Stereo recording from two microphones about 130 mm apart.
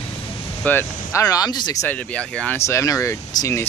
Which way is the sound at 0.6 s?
15° left (ahead or behind).